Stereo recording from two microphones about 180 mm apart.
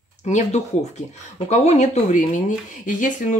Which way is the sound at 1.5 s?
40° left (ahead or behind).